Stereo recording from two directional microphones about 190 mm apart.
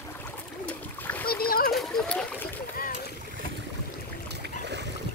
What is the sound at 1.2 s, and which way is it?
Splash, 50° left (ahead or behind).